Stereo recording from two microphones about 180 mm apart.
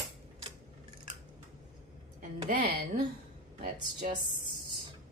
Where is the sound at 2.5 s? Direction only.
60° right (ahead or behind).